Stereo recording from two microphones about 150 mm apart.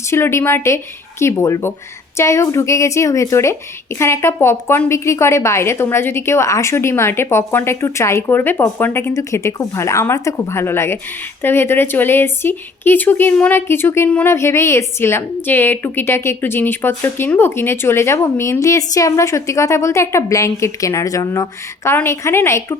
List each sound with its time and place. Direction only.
0.1 s speech: 15° left (ahead or behind)